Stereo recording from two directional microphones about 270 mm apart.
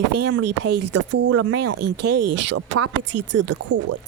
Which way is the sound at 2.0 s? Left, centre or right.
Right.